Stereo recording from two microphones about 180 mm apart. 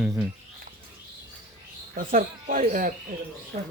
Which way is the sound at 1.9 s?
50° right (ahead or behind).